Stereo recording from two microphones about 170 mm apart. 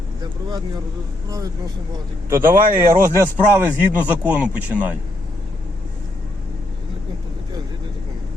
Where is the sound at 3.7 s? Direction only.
10° right (ahead or behind).